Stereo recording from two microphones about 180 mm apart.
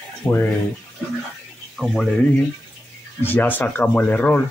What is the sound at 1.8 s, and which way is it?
Speech, 5° left (ahead or behind).